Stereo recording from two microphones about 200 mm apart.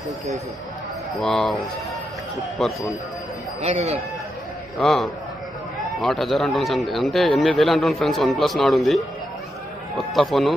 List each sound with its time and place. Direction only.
1.2 s a man's voice: centre (ahead or behind)
2.6 s a man's voice: centre (ahead or behind)
3.6 s speech: 30° right (ahead or behind)
4.7 s a man's voice: centre (ahead or behind)
10.1 s a man's voice: centre (ahead or behind)